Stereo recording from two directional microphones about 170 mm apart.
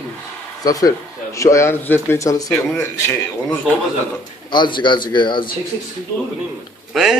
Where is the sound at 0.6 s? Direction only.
20° left (ahead or behind).